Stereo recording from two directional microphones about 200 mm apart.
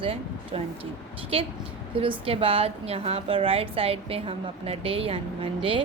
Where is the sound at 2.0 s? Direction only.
30° right (ahead or behind).